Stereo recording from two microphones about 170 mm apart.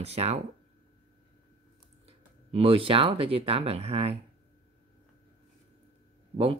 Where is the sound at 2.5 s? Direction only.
35° right (ahead or behind).